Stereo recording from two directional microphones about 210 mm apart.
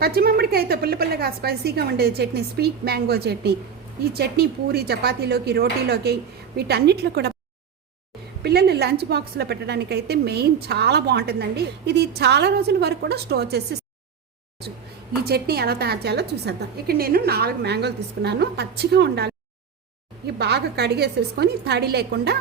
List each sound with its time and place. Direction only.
0.0 s a woman's voice: 45° right (ahead or behind)
8.4 s a woman's voice: 50° right (ahead or behind)
15.2 s a woman's voice: 50° right (ahead or behind)